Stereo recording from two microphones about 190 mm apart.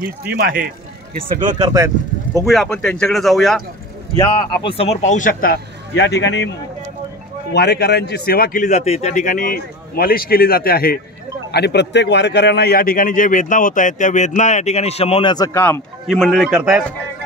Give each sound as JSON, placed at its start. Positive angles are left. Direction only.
{"t": 0.2, "sound": "speech", "side_deg": -50}
{"t": 1.1, "sound": "speech", "side_deg": -20}
{"t": 2.4, "sound": "speech", "side_deg": 0}
{"t": 4.2, "sound": "a man's voice", "side_deg": 30}
{"t": 7.5, "sound": "a man's voice", "side_deg": 60}
{"t": 16.1, "sound": "speech", "side_deg": 0}